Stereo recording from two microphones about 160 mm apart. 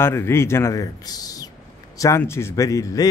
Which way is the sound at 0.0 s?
15° left (ahead or behind).